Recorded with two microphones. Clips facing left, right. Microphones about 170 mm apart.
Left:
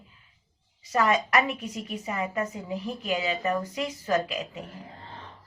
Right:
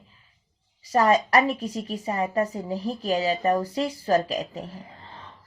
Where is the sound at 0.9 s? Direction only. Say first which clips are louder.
Right 4 dB; 35° right (ahead or behind).